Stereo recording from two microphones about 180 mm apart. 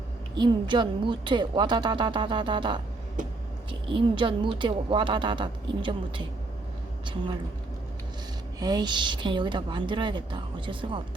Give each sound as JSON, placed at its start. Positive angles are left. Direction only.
{"t": 0.3, "sound": "speech", "side_deg": -25}
{"t": 3.2, "sound": "speech", "side_deg": -45}
{"t": 3.7, "sound": "speech", "side_deg": -30}
{"t": 8.5, "sound": "speech", "side_deg": -20}